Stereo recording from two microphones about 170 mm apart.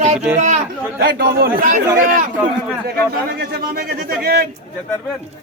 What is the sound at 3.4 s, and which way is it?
A man's voice, 65° right (ahead or behind).